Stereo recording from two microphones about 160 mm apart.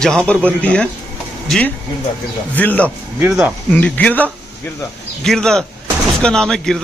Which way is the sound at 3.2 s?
10° right (ahead or behind).